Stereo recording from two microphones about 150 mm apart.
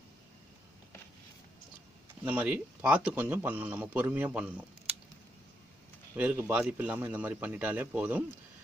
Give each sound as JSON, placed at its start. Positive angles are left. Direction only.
{"t": 2.2, "sound": "speech", "side_deg": -10}
{"t": 6.1, "sound": "speech", "side_deg": -10}